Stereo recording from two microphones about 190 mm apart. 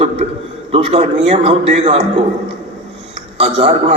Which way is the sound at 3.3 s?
30° right (ahead or behind).